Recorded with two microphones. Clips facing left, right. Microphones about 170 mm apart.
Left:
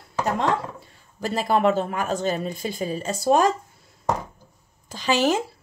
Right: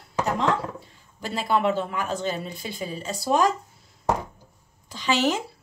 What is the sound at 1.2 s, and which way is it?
Speech, 40° left (ahead or behind).